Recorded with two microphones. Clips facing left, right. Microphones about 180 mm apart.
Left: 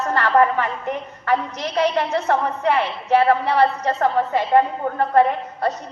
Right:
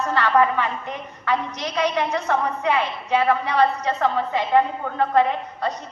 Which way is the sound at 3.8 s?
45° left (ahead or behind).